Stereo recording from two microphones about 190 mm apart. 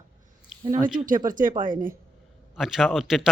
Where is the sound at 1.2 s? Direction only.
45° right (ahead or behind).